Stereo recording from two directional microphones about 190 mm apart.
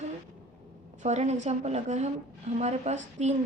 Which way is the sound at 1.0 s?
35° right (ahead or behind).